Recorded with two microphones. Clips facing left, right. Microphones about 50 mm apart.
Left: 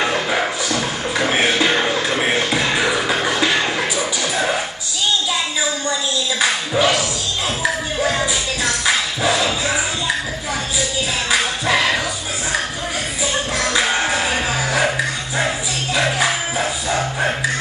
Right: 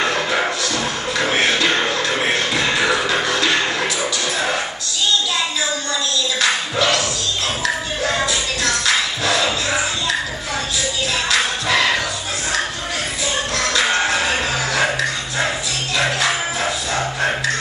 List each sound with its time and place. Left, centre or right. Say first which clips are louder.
0.0 s music: even; centre
6.4 s music: left 2 dB; centre
11.2 s music: left 1 dB; centre
13.6 s music: right 1 dB; centre